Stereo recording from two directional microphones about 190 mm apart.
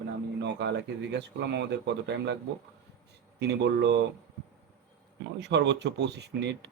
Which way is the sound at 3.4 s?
65° right (ahead or behind).